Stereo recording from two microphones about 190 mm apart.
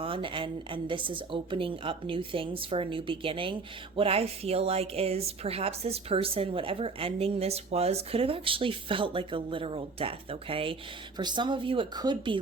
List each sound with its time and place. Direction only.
0.0 s a woman's voice: 25° right (ahead or behind)